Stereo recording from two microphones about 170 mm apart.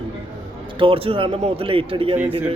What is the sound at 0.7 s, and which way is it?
Speech, 30° right (ahead or behind).